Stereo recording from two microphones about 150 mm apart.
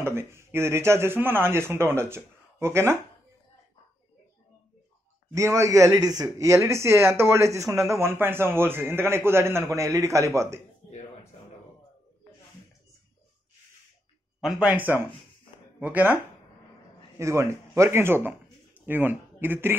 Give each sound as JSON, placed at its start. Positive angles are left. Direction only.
{"t": 0.0, "sound": "speech", "side_deg": -15}
{"t": 5.3, "sound": "speech", "side_deg": -20}
{"t": 14.4, "sound": "speech", "side_deg": -5}
{"t": 17.2, "sound": "speech", "side_deg": -20}